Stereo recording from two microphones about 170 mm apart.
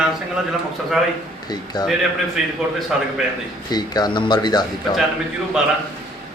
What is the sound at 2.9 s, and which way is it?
Speech, 5° right (ahead or behind).